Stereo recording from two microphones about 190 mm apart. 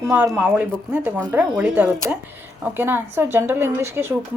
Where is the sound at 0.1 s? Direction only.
10° right (ahead or behind).